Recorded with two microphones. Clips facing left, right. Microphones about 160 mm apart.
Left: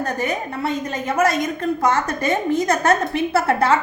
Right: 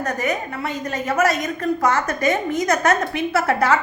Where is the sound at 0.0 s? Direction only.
30° left (ahead or behind).